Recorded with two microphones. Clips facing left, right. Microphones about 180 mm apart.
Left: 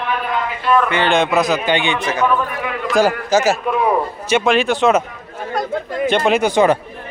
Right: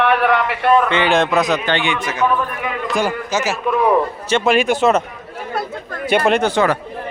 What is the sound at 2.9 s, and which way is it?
Speech, 35° left (ahead or behind).